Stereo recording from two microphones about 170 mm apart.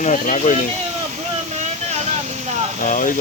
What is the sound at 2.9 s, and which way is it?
Speech, 50° left (ahead or behind).